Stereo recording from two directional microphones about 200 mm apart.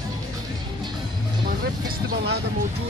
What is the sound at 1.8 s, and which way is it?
Speech, 55° right (ahead or behind).